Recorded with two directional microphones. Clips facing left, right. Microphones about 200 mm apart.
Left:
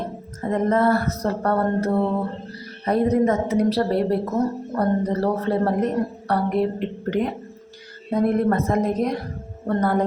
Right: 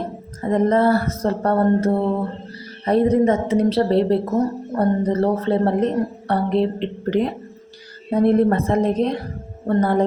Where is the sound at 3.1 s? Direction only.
30° right (ahead or behind).